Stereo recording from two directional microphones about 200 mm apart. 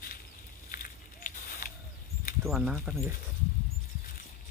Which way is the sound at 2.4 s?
Centre (ahead or behind).